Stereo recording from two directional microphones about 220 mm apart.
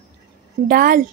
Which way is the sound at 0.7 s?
40° right (ahead or behind).